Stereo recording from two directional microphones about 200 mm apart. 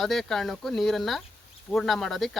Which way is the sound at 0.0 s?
Centre (ahead or behind).